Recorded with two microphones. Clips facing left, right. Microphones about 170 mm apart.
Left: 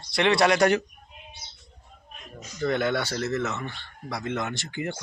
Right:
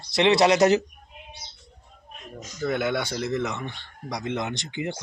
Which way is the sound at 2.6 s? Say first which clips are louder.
Even; 10° right (ahead or behind).